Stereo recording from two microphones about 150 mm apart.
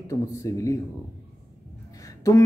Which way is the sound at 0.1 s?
20° left (ahead or behind).